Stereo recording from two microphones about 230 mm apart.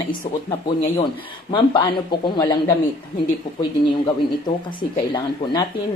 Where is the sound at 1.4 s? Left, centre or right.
Left.